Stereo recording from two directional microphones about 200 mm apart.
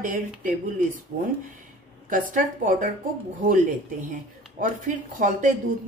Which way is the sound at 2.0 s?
40° right (ahead or behind).